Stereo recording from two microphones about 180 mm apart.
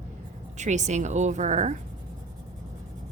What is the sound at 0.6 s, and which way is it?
A woman's voice, 40° right (ahead or behind).